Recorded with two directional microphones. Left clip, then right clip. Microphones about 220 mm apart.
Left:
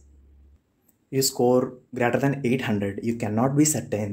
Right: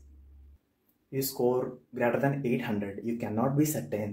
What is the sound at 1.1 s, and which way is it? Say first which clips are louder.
Speech: left 8 dB; 45° left (ahead or behind).